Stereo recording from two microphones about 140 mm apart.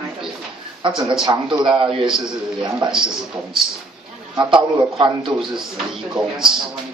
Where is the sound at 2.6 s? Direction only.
30° right (ahead or behind).